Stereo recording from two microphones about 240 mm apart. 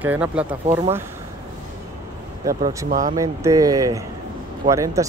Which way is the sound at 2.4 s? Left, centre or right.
Centre.